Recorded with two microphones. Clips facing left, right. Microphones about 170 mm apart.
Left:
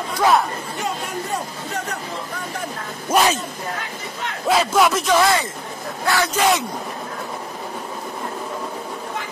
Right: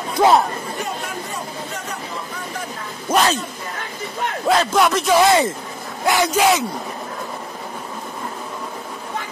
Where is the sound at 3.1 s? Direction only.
5° left (ahead or behind).